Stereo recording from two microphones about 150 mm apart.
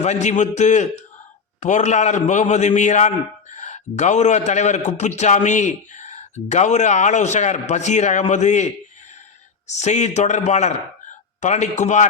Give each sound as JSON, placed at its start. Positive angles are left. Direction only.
{"t": 0.0, "sound": "a man's voice", "side_deg": 50}
{"t": 9.7, "sound": "a man's voice", "side_deg": 50}